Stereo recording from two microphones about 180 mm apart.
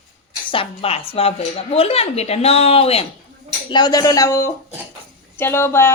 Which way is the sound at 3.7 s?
25° left (ahead or behind).